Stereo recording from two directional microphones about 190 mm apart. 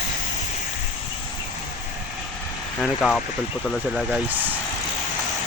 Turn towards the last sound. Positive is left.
turn(degrees=-5)  # may be behind; listen again after turning